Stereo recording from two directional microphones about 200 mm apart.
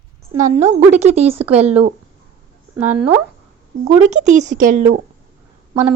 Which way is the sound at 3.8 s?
35° right (ahead or behind).